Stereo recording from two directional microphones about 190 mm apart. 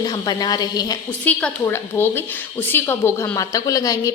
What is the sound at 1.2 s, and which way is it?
A woman's voice, 10° left (ahead or behind).